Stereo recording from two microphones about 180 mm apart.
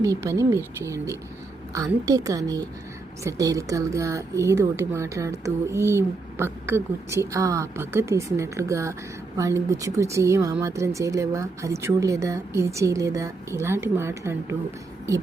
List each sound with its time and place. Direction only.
0.0 s a woman's voice: 15° right (ahead or behind)